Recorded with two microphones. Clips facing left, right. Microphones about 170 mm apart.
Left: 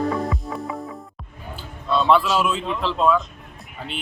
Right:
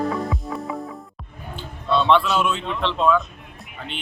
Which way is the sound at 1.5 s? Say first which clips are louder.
Right 1 dB; 5° left (ahead or behind).